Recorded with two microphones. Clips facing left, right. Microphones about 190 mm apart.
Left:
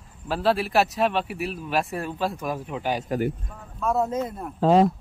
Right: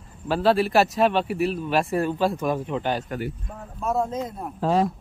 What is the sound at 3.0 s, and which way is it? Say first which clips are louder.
Speech: left 5 dB; 45° left (ahead or behind).